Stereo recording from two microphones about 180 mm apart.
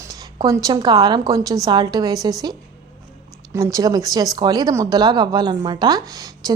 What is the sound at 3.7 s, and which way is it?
Speech, 20° right (ahead or behind).